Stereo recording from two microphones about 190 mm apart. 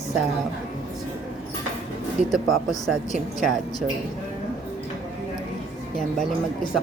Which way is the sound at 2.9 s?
Centre (ahead or behind).